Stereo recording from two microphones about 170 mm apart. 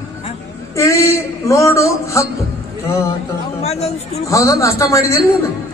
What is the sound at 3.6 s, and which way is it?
Speech, 40° left (ahead or behind).